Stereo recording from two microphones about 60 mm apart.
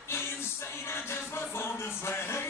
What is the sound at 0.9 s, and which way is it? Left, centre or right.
Music, left.